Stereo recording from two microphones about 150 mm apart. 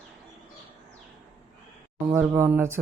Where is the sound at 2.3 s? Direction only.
15° right (ahead or behind).